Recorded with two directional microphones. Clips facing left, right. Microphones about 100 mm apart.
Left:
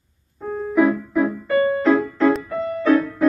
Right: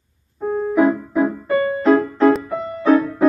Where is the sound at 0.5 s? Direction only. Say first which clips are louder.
Right 2 dB; 25° right (ahead or behind).